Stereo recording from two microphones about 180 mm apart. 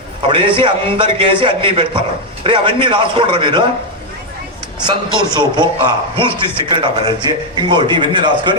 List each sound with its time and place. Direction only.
0.2 s a man's voice: 30° right (ahead or behind)
4.8 s a man's voice: 25° right (ahead or behind)